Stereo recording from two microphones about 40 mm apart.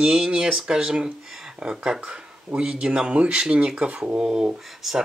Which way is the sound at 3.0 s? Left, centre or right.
Right.